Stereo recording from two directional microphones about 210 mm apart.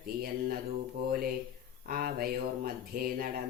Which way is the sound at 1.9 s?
45° right (ahead or behind).